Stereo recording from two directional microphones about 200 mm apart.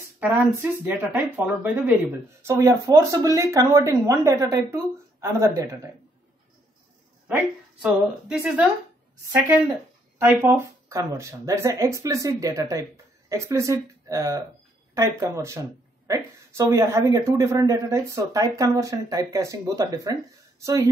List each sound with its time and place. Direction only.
0.8 s speech: 10° right (ahead or behind)
7.2 s speech: 5° right (ahead or behind)